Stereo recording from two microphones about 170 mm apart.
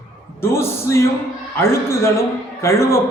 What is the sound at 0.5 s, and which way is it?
A man's voice, 15° left (ahead or behind).